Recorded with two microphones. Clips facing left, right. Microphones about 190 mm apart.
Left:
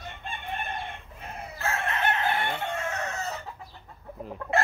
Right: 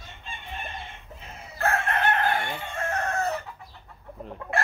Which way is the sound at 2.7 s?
55° right (ahead or behind).